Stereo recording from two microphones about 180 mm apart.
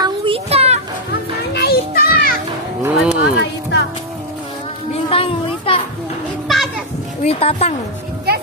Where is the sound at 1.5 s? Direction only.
60° left (ahead or behind).